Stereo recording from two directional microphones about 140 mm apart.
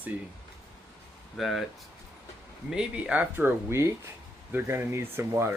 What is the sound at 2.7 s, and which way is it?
Speech, 5° right (ahead or behind).